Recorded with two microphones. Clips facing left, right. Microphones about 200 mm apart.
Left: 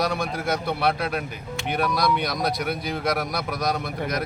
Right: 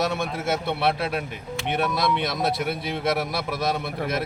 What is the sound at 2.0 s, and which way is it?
Speech, 25° right (ahead or behind).